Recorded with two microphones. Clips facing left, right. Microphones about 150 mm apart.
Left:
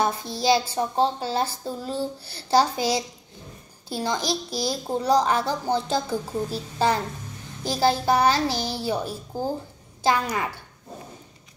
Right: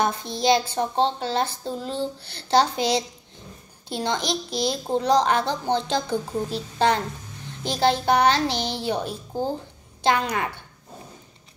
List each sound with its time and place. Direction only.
0.0 s a woman's voice: 5° left (ahead or behind)